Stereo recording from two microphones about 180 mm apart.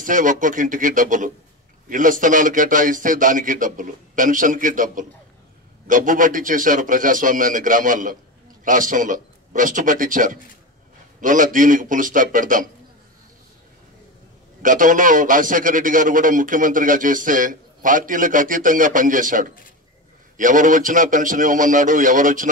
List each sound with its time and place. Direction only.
0.0 s a man's voice: 45° right (ahead or behind)
14.6 s a man's voice: 45° right (ahead or behind)